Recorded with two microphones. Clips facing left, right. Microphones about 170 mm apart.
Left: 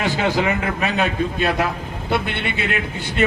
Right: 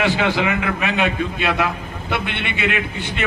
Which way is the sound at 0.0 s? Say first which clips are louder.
Right 1 dB; 40° left (ahead or behind).